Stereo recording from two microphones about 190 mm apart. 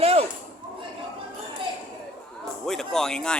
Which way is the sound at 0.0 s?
30° right (ahead or behind).